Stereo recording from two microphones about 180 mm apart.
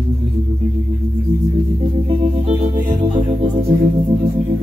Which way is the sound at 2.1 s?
35° right (ahead or behind).